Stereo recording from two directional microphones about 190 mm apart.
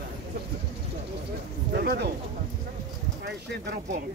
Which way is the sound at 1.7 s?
60° right (ahead or behind).